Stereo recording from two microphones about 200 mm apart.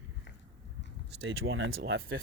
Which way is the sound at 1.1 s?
65° right (ahead or behind).